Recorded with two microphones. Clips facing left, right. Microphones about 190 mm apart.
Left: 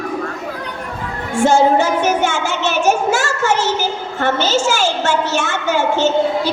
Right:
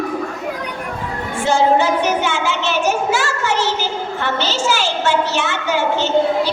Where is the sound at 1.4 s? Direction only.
45° left (ahead or behind).